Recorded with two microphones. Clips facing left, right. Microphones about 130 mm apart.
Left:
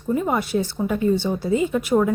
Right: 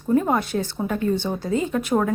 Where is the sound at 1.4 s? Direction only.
50° right (ahead or behind).